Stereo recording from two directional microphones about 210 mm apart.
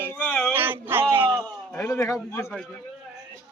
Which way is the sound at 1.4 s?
10° left (ahead or behind).